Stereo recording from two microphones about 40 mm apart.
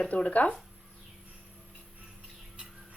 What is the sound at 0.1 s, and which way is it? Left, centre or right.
Speech, left.